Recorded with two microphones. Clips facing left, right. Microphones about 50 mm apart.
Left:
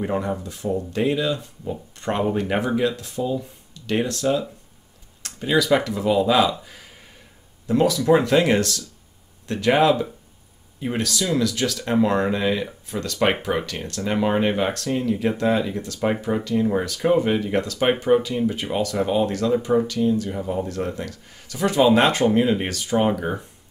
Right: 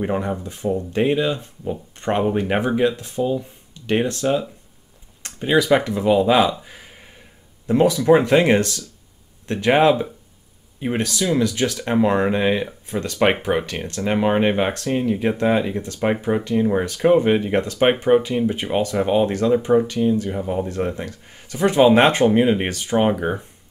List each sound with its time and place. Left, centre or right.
0.0 s speech: centre
6.6 s a sound: right
7.6 s speech: right